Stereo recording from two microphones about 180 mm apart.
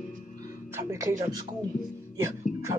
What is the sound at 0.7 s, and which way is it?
Speech, 20° right (ahead or behind).